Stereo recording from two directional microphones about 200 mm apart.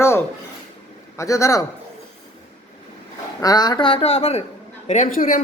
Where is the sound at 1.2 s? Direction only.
15° left (ahead or behind).